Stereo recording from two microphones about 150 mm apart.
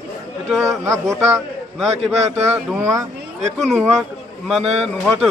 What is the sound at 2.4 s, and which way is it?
Speech, 15° right (ahead or behind).